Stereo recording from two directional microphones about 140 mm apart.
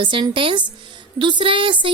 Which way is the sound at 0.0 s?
35° right (ahead or behind).